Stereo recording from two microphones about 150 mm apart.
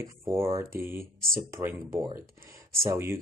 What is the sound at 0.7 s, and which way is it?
Speech, 15° right (ahead or behind).